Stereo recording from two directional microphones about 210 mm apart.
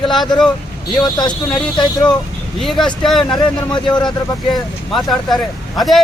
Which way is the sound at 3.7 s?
20° left (ahead or behind).